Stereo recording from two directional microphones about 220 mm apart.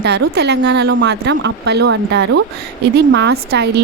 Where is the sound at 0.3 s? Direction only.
50° right (ahead or behind).